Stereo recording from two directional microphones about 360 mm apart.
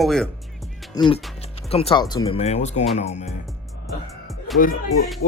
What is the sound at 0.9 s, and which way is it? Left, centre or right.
Speech, centre.